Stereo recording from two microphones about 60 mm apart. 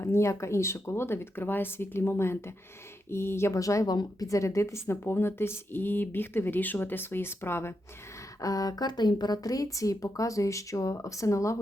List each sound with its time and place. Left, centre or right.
0.0 s speech: left
3.5 s a woman's voice: left
8.4 s a woman's voice: left
9.7 s speech: left